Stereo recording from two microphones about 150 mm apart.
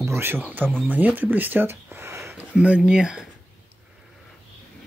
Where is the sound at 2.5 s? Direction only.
5° right (ahead or behind).